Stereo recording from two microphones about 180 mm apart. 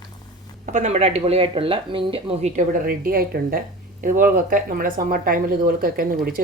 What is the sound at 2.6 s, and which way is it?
Speech, 50° right (ahead or behind).